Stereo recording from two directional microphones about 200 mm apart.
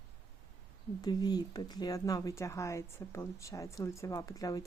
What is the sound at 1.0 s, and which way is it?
Speech, 20° left (ahead or behind).